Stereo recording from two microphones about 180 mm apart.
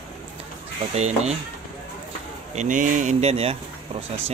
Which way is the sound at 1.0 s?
35° right (ahead or behind).